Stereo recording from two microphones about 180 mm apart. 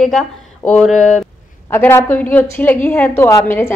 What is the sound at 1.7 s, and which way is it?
A woman's voice, 15° left (ahead or behind).